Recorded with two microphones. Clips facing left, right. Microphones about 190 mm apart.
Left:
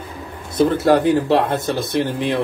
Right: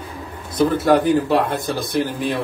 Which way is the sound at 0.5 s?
25° left (ahead or behind).